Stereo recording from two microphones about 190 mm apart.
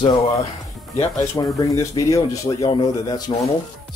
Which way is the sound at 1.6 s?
15° left (ahead or behind).